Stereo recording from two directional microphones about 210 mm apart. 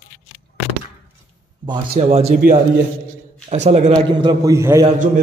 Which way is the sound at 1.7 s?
30° right (ahead or behind).